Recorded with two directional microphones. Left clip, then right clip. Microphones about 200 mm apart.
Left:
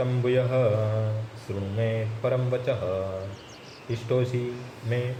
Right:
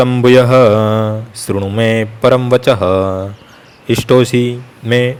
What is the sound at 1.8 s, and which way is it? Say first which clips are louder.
A man's voice: right 15 dB; 55° right (ahead or behind).